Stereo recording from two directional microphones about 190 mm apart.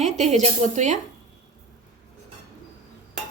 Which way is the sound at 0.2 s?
35° right (ahead or behind).